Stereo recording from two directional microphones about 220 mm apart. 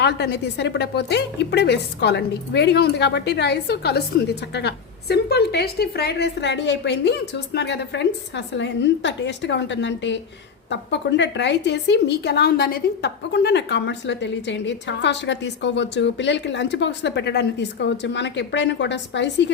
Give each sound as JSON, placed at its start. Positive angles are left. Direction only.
{"t": 0.0, "sound": "a woman's voice", "side_deg": 50}